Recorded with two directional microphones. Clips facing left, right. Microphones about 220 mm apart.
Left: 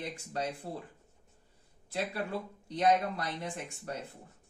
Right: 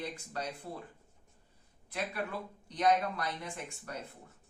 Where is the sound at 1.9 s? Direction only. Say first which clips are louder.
Left 3 dB; 30° left (ahead or behind).